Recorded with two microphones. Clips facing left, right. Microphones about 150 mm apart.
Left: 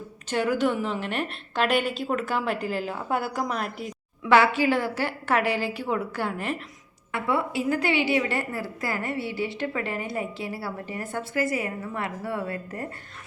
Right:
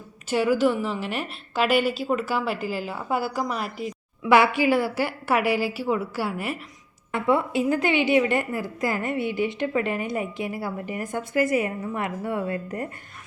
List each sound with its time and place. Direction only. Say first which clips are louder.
0.3 s a woman's voice: right 3 dB; 5° right (ahead or behind)
4.3 s a woman's voice: right 1 dB; 10° right (ahead or behind)
7.1 s a woman's voice: right 4 dB; 20° right (ahead or behind)